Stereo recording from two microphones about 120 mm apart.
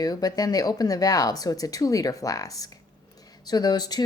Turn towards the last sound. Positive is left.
turn(degrees=35)  # may be behind; listen again after turning